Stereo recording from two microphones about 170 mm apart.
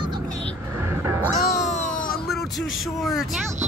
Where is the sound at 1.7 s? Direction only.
50° left (ahead or behind).